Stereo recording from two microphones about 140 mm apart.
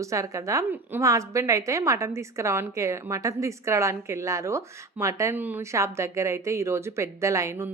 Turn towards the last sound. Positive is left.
turn(degrees=-20)  # may be behind; listen again after turning